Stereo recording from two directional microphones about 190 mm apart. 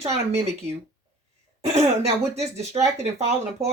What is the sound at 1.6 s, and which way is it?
Speech, 35° right (ahead or behind).